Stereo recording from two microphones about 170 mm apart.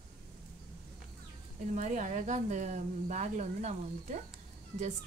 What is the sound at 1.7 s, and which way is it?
A woman's voice, 45° right (ahead or behind).